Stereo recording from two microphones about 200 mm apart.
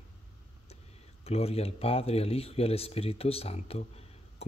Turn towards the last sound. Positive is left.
turn(degrees=30)  # may be behind; listen again after turning